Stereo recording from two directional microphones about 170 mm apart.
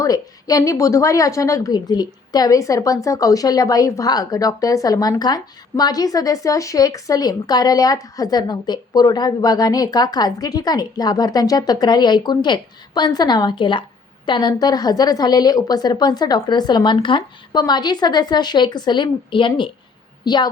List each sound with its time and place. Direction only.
0.0 s a woman's voice: 20° left (ahead or behind)